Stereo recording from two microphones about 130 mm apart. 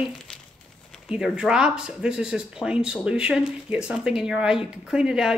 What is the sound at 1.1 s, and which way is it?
Speech, 5° right (ahead or behind).